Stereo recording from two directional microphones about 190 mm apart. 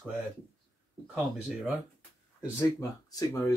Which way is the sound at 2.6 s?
20° left (ahead or behind).